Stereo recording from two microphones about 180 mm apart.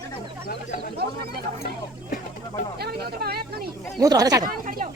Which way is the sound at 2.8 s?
60° right (ahead or behind).